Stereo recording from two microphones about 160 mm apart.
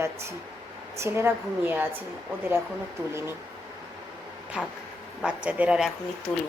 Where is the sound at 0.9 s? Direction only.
15° right (ahead or behind).